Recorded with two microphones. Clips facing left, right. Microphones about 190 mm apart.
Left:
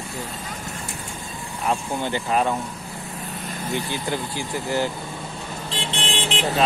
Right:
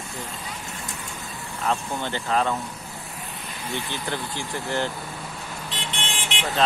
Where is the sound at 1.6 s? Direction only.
15° left (ahead or behind).